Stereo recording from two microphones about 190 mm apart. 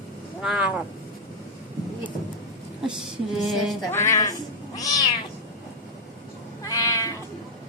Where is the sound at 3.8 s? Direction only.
15° left (ahead or behind).